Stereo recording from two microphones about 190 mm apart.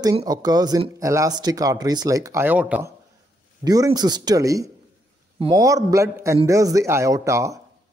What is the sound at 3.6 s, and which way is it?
Speech, 20° right (ahead or behind).